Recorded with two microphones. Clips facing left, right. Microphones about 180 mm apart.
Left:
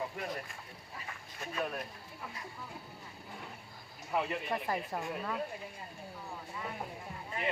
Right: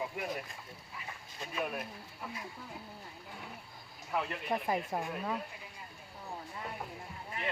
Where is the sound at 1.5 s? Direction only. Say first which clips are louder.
Even; 5° right (ahead or behind).